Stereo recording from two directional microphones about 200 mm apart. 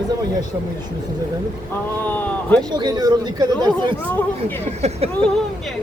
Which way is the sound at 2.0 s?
10° left (ahead or behind).